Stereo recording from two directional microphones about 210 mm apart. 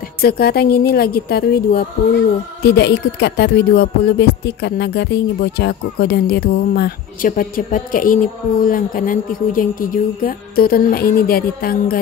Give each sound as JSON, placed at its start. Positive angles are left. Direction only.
{"t": 0.2, "sound": "music", "side_deg": 50}